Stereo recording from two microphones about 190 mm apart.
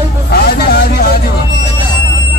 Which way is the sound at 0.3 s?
55° left (ahead or behind).